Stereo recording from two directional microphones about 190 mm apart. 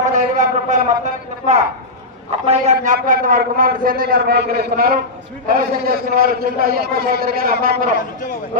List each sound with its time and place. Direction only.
0.0 s a sound: 40° right (ahead or behind)
2.5 s a man's voice: 40° right (ahead or behind)
7.9 s a man's voice: 45° left (ahead or behind)